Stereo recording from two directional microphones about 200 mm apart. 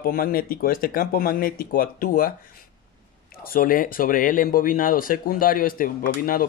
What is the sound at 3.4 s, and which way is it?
Speech, 45° left (ahead or behind).